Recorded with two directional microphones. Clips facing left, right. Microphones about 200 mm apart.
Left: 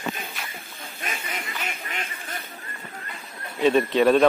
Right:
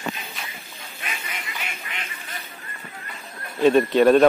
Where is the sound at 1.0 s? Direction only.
45° left (ahead or behind).